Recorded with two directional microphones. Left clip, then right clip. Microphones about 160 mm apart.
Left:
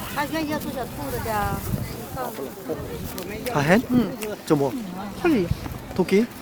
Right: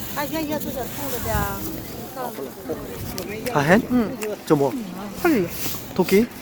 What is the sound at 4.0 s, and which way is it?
Speech, 40° left (ahead or behind).